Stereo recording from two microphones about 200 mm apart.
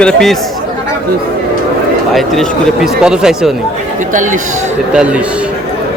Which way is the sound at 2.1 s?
Centre (ahead or behind).